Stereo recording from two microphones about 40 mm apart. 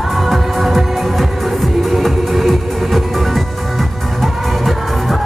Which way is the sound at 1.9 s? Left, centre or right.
Centre.